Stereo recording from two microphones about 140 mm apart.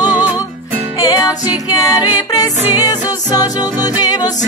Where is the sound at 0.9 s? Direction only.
25° left (ahead or behind).